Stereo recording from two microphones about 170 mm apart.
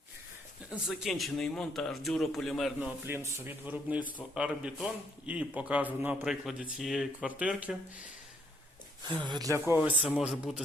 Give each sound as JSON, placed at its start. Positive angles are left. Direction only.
{"t": 0.7, "sound": "a man's voice", "side_deg": 0}
{"t": 3.2, "sound": "speech", "side_deg": -15}
{"t": 9.2, "sound": "a man's voice", "side_deg": -25}